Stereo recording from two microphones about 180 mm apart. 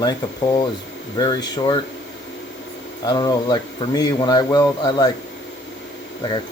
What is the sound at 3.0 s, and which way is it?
Speech, 20° left (ahead or behind).